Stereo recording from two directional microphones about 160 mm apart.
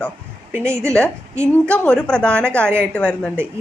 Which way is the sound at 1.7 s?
10° left (ahead or behind).